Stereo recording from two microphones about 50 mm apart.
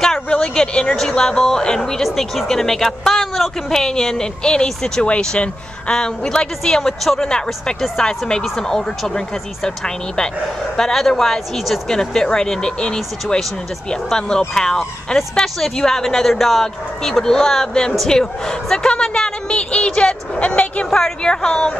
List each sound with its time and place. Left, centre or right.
0.0 s a sound: centre
1.1 s a woman's voice: centre
20.9 s a woman's voice: centre